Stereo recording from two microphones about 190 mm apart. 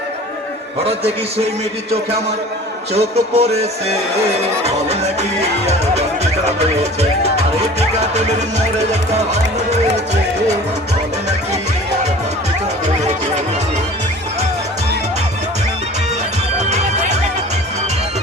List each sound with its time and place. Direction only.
0.9 s music: 30° right (ahead or behind)
2.9 s music: 35° right (ahead or behind)
5.4 s speech: 35° right (ahead or behind)
7.8 s music: 35° right (ahead or behind)
16.6 s music: 35° right (ahead or behind)